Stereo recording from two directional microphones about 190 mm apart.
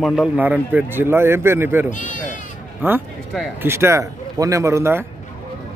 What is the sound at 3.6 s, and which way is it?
A man's voice, 15° right (ahead or behind).